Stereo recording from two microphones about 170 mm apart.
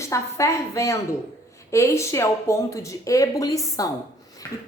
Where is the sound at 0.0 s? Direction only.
15° left (ahead or behind).